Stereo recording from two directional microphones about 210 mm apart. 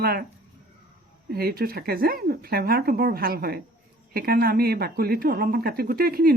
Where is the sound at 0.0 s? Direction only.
45° right (ahead or behind).